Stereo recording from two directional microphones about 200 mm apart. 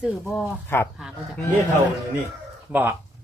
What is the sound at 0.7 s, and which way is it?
Speech, 10° left (ahead or behind).